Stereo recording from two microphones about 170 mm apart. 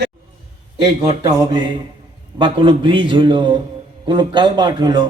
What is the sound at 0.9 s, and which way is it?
A man's voice, 25° right (ahead or behind).